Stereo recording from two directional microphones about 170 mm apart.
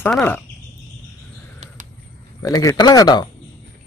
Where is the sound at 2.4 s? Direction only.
20° left (ahead or behind).